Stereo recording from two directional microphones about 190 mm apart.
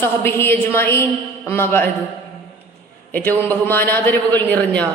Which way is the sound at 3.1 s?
10° left (ahead or behind).